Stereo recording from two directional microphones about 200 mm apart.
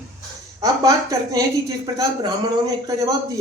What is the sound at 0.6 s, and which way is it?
Speech, 15° right (ahead or behind).